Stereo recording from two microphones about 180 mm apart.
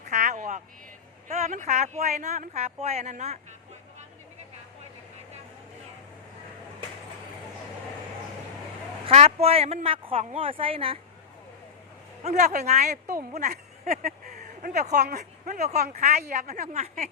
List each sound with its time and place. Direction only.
0.0 s vehicle: 40° right (ahead or behind)
1.3 s speech: 40° right (ahead or behind)
9.0 s speech: 35° right (ahead or behind)
12.2 s speech: 40° right (ahead or behind)
13.5 s a sound: 55° right (ahead or behind)
14.8 s speech: 40° right (ahead or behind)
15.2 s a woman's voice: 55° right (ahead or behind)
15.9 s speech: 40° right (ahead or behind)